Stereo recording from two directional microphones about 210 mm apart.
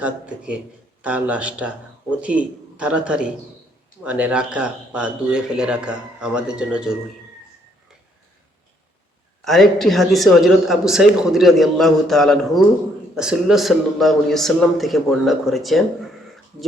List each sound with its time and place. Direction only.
0.0 s speech: 5° right (ahead or behind)
9.4 s speech: centre (ahead or behind)